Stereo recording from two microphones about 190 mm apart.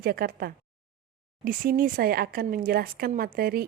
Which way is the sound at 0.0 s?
50° right (ahead or behind).